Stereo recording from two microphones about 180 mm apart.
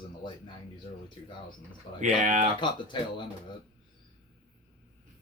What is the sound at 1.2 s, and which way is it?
Speech, 30° left (ahead or behind).